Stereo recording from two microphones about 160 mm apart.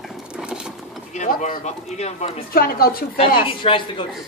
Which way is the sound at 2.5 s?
70° left (ahead or behind).